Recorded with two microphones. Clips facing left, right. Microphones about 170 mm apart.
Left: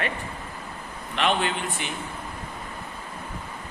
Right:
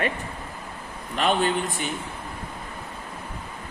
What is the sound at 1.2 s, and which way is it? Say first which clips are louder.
Speech: right 2 dB; 40° right (ahead or behind).